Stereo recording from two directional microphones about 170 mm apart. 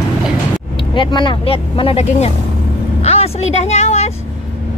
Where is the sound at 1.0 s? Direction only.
30° left (ahead or behind).